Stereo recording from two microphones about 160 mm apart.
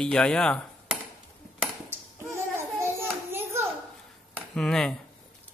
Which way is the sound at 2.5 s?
15° right (ahead or behind).